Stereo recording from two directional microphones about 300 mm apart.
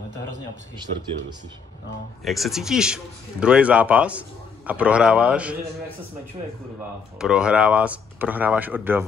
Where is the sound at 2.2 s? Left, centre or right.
Centre.